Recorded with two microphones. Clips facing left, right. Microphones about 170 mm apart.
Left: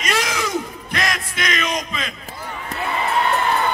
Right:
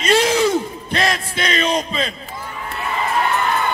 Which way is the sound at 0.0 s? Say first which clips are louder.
Right 8 dB; 30° right (ahead or behind).